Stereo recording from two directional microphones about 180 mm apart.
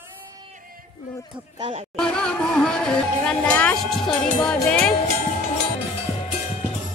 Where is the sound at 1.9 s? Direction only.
5° left (ahead or behind).